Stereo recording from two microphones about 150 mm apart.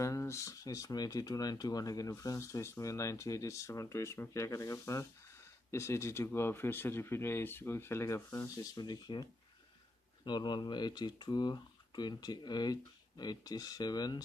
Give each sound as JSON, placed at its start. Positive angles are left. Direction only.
{"t": 0.0, "sound": "speech", "side_deg": 20}
{"t": 8.7, "sound": "speech", "side_deg": 30}